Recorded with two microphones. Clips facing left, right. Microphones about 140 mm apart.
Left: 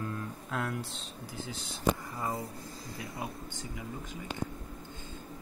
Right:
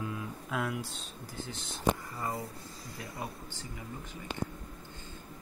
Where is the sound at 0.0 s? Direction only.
5° right (ahead or behind).